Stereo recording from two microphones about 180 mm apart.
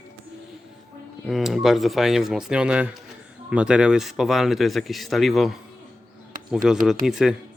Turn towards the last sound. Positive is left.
turn(degrees=0)  # may be behind; listen again after turning